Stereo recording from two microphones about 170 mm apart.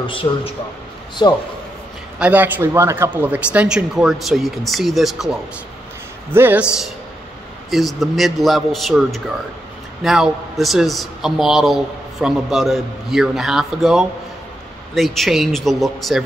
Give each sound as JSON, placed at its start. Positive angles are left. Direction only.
{"t": 0.0, "sound": "a man's voice", "side_deg": 30}
{"t": 2.1, "sound": "a man's voice", "side_deg": -10}